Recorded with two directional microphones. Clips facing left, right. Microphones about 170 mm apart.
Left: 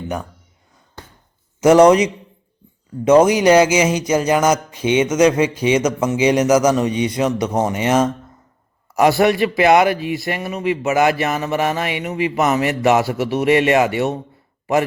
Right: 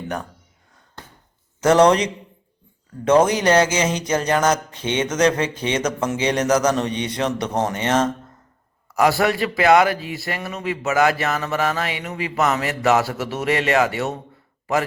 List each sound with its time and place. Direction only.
1.6 s speech: 10° left (ahead or behind)
9.0 s speech: 20° left (ahead or behind)